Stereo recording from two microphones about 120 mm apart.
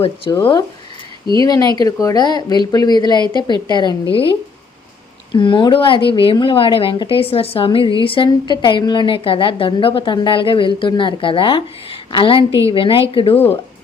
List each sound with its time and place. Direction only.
0.3 s speech: 40° left (ahead or behind)
4.1 s a woman's voice: 50° left (ahead or behind)
13.3 s speech: 15° left (ahead or behind)